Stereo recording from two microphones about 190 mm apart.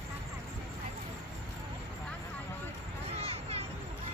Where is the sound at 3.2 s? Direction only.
30° right (ahead or behind).